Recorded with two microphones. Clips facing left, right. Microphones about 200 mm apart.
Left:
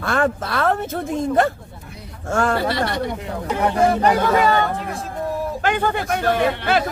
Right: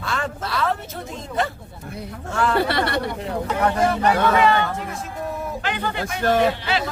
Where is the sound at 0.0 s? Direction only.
55° left (ahead or behind).